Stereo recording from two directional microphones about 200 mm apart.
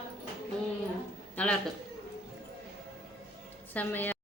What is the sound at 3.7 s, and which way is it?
Speech, 10° left (ahead or behind).